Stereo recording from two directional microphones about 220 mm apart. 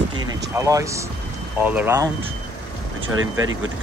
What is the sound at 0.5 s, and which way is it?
Speech, 15° right (ahead or behind).